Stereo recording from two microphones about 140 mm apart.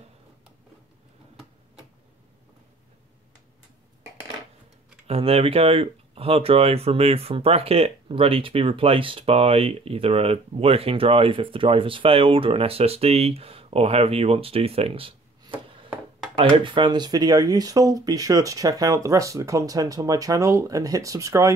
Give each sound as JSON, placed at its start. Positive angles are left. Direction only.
{"t": 5.0, "sound": "speech", "side_deg": -45}